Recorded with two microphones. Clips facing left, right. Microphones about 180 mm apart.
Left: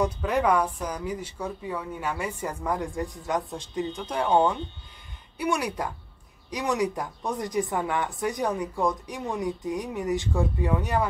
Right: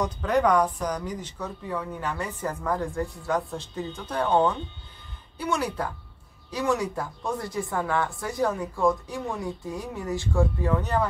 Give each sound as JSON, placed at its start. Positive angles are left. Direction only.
{"t": 0.0, "sound": "a woman's voice", "side_deg": 10}